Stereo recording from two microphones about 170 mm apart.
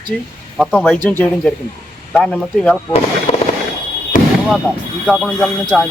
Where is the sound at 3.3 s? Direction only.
35° left (ahead or behind).